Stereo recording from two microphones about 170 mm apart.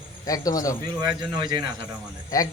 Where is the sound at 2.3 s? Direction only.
20° left (ahead or behind).